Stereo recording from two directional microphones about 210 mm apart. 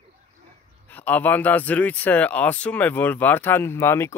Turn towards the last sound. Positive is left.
turn(degrees=10)  # may be behind; listen again after turning